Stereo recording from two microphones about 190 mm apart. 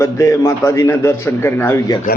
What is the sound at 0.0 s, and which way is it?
A man's voice, 15° left (ahead or behind).